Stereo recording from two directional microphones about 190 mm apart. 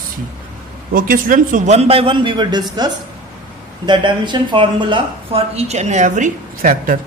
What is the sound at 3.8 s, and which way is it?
A woman's voice, 25° right (ahead or behind).